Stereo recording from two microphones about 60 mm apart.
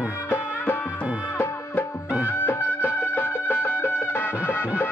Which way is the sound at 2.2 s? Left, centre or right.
Left.